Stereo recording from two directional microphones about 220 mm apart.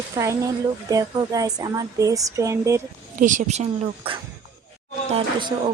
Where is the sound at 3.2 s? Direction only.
35° right (ahead or behind).